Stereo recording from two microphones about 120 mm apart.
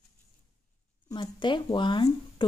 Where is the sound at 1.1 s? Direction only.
40° left (ahead or behind).